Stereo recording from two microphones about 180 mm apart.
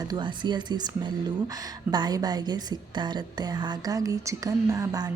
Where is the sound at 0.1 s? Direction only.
25° right (ahead or behind).